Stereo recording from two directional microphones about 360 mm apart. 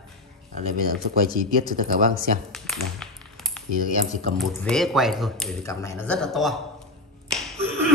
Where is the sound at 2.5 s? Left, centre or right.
Centre.